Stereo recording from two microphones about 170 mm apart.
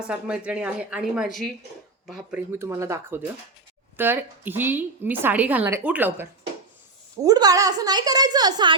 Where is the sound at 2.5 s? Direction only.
15° right (ahead or behind).